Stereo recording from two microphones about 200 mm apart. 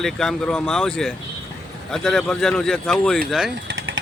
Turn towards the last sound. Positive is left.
turn(degrees=-75)  # may be behind; listen again after turning